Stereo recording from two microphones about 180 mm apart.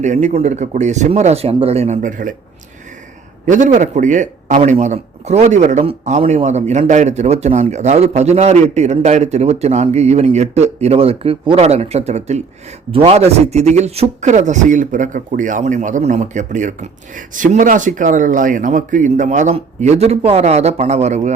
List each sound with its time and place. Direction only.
0.0 s speech: 40° right (ahead or behind)
3.4 s speech: 45° right (ahead or behind)